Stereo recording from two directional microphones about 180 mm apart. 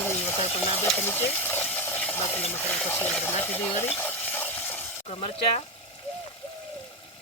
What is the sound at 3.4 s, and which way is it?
Stir, 10° left (ahead or behind).